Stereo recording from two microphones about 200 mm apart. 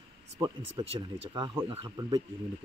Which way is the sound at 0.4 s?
20° right (ahead or behind).